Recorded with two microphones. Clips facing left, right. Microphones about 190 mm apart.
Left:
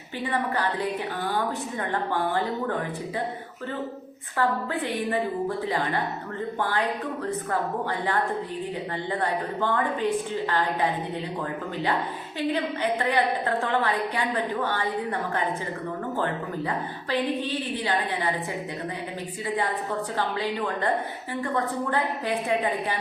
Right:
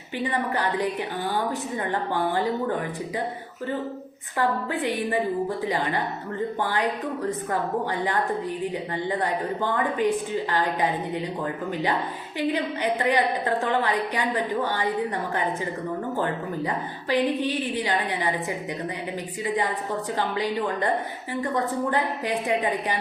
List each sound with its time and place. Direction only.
9.6 s a woman's voice: 15° right (ahead or behind)
12.4 s a woman's voice: 15° right (ahead or behind)
14.6 s a woman's voice: 15° right (ahead or behind)
16.6 s a woman's voice: 15° right (ahead or behind)
20.1 s a woman's voice: 15° right (ahead or behind)